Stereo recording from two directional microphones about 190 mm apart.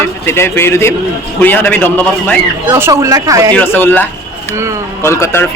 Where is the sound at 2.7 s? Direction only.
15° right (ahead or behind).